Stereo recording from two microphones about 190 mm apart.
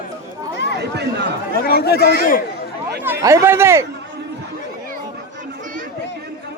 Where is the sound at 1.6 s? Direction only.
55° left (ahead or behind).